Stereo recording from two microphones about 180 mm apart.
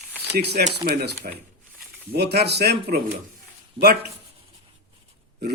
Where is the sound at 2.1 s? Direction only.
65° right (ahead or behind).